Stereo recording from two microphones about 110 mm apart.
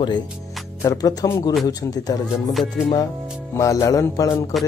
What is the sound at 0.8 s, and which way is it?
Speech, 30° left (ahead or behind).